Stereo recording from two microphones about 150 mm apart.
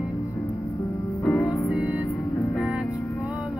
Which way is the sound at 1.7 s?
5° right (ahead or behind).